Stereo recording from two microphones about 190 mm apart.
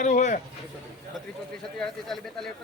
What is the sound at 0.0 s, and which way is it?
Speech, 40° left (ahead or behind).